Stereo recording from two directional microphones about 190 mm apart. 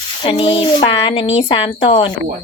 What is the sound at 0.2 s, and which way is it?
Speech, 25° left (ahead or behind).